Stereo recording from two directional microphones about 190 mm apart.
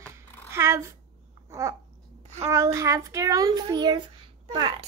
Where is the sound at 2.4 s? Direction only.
15° right (ahead or behind).